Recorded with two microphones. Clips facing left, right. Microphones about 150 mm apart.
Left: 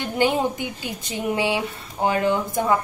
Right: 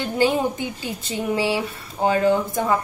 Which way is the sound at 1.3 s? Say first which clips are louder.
Right 1 dB; 20° left (ahead or behind).